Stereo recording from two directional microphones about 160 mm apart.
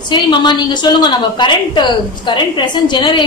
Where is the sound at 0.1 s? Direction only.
30° left (ahead or behind).